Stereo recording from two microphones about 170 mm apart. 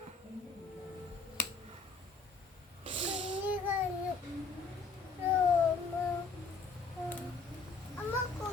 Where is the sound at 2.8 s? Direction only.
30° right (ahead or behind).